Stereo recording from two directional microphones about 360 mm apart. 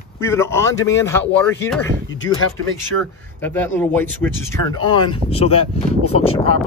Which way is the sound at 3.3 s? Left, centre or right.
Centre.